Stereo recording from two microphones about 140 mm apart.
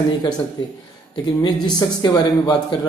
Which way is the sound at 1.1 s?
30° left (ahead or behind).